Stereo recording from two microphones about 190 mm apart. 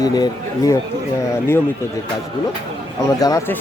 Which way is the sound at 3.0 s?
20° left (ahead or behind).